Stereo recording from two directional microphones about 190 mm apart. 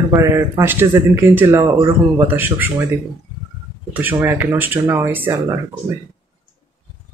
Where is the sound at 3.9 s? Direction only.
10° right (ahead or behind).